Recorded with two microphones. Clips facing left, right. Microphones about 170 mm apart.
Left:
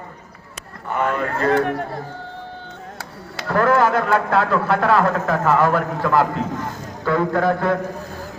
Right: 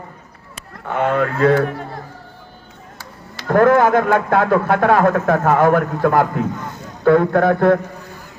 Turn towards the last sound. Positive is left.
turn(degrees=-55)  # may be behind; listen again after turning